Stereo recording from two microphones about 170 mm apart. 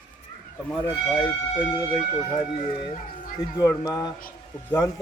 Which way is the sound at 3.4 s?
25° left (ahead or behind).